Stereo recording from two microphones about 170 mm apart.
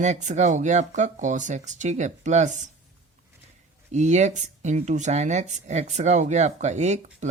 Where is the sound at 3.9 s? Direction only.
40° right (ahead or behind).